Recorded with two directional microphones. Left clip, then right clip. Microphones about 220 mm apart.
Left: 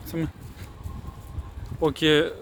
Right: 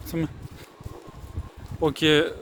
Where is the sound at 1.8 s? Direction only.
5° right (ahead or behind).